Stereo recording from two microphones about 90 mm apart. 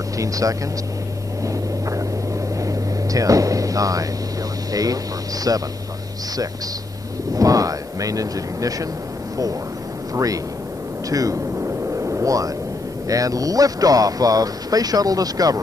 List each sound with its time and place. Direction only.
0.2 s speech: 40° right (ahead or behind)
1.4 s vehicle: 35° right (ahead or behind)
2.6 s a sound: 40° right (ahead or behind)
5.5 s speech: 40° right (ahead or behind)
7.3 s speech: 40° right (ahead or behind)
10.1 s speech: 40° right (ahead or behind)
11.1 s a sound: 40° right (ahead or behind)
13.1 s speech: 40° right (ahead or behind)